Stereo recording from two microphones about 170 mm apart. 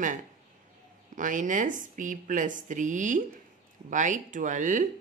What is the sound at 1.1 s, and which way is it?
A woman's voice, 50° right (ahead or behind).